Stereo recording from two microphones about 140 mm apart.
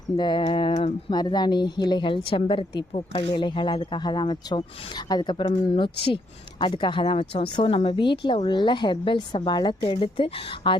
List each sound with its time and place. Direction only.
0.2 s a woman's voice: 35° left (ahead or behind)